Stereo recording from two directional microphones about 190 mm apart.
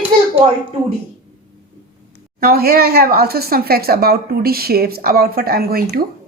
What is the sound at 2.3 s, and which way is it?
A woman's voice, 50° right (ahead or behind).